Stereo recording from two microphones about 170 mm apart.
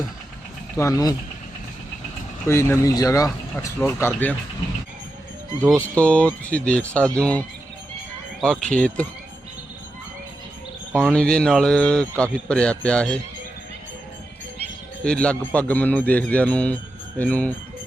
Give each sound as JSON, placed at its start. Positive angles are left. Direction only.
{"t": 0.8, "sound": "speech", "side_deg": 20}
{"t": 2.5, "sound": "speech", "side_deg": 15}
{"t": 5.6, "sound": "speech", "side_deg": -10}
{"t": 6.0, "sound": "speech", "side_deg": 5}
{"t": 10.9, "sound": "speech", "side_deg": 5}
{"t": 15.0, "sound": "speech", "side_deg": 5}